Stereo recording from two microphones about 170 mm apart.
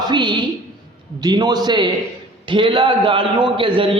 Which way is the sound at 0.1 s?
25° right (ahead or behind).